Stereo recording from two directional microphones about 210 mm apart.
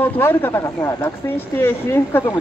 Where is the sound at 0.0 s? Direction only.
10° left (ahead or behind).